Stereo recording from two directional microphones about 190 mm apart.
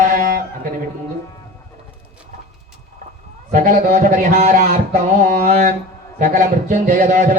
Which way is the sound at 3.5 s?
50° right (ahead or behind).